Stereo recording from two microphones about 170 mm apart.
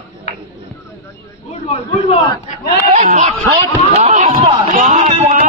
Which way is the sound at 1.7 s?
40° left (ahead or behind).